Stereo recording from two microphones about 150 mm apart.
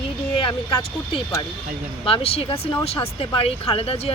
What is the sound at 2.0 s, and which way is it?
Speech, 40° left (ahead or behind).